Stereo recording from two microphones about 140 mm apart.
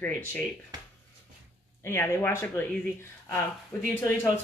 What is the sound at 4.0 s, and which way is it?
Speech, 20° left (ahead or behind).